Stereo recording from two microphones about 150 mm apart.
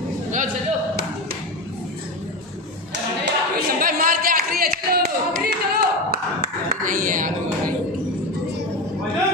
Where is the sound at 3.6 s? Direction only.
70° right (ahead or behind); by 6.2 s 90° right.